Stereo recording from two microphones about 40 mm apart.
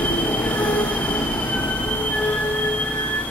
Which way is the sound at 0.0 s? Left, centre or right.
Left.